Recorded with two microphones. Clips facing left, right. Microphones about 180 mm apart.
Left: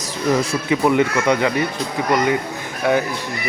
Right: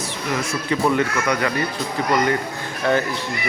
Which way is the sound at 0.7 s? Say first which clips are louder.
Left 3 dB; 15° left (ahead or behind).